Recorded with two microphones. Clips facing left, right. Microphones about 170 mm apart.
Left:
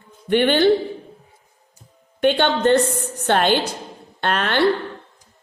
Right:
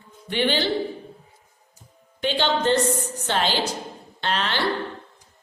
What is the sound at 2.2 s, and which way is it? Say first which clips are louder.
A woman's voice: left 6 dB; 55° left (ahead or behind).